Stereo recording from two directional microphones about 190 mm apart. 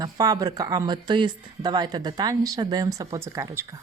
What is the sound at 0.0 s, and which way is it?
Speech, 20° right (ahead or behind).